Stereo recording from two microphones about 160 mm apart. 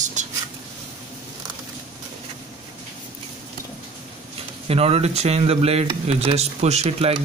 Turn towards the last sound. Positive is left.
turn(degrees=-40)  # may be behind; listen again after turning